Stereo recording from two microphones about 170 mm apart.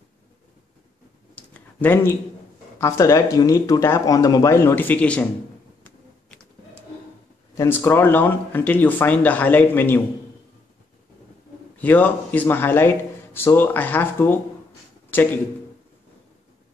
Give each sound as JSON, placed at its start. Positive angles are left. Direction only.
{"t": 1.3, "sound": "a sound", "side_deg": 10}
{"t": 2.8, "sound": "speech", "side_deg": 15}
{"t": 7.5, "sound": "speech", "side_deg": 15}
{"t": 11.8, "sound": "speech", "side_deg": 10}